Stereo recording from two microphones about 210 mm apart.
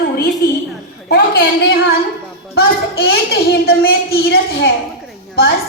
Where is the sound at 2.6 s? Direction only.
45° left (ahead or behind).